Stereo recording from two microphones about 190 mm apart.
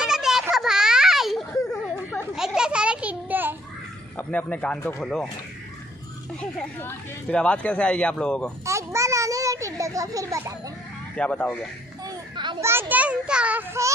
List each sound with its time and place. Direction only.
0.0 s a sound: 5° right (ahead or behind)
4.2 s speech: 10° left (ahead or behind)
6.4 s speech: 5° left (ahead or behind)
8.6 s a sound: 15° right (ahead or behind)
11.1 s speech: 5° left (ahead or behind)
12.0 s a child's voice: 20° right (ahead or behind)